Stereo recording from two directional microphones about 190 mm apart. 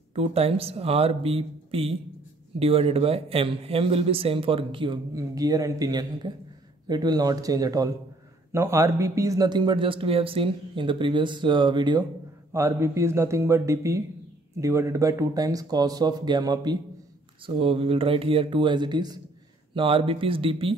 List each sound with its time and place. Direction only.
0.1 s a man's voice: 30° right (ahead or behind)